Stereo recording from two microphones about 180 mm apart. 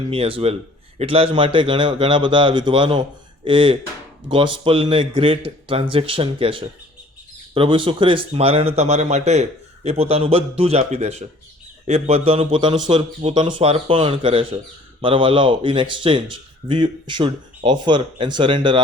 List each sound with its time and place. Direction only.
0.1 s speech: 30° right (ahead or behind)